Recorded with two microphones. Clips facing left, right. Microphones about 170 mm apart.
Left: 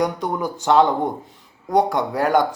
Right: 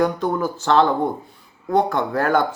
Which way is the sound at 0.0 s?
15° left (ahead or behind).